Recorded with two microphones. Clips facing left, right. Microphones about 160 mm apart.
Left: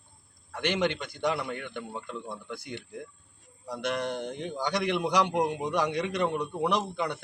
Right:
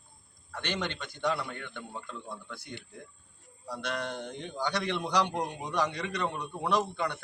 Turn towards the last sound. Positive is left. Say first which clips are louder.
# left 1 dB
turn(degrees=10)  # may be behind; listen again after turning